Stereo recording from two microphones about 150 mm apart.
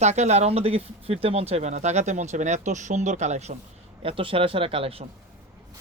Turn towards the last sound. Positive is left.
turn(degrees=-40)  # may be behind; listen again after turning